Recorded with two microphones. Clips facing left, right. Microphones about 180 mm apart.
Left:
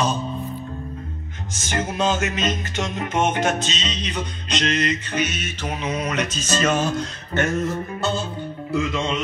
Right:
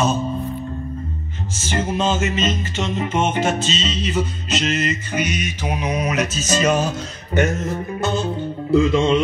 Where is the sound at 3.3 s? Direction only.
5° right (ahead or behind).